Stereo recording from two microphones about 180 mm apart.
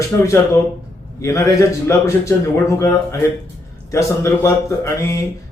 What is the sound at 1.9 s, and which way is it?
Speech, 15° left (ahead or behind).